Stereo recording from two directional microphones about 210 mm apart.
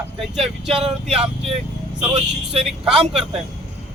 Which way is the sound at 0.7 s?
30° right (ahead or behind).